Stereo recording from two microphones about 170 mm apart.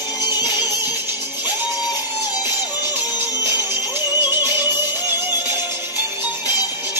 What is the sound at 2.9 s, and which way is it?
Music, 10° right (ahead or behind).